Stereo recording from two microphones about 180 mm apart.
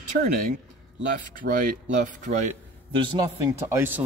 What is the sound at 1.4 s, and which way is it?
Speech, 65° right (ahead or behind).